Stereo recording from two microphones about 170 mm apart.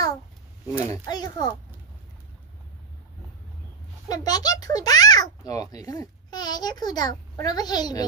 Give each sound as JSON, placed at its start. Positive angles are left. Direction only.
{"t": 0.9, "sound": "a child's voice", "side_deg": 25}
{"t": 4.1, "sound": "a child's voice", "side_deg": 25}